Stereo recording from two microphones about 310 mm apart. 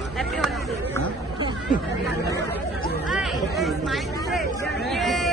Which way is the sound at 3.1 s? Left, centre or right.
Centre.